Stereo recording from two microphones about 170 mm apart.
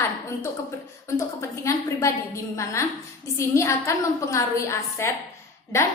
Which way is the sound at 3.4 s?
15° left (ahead or behind).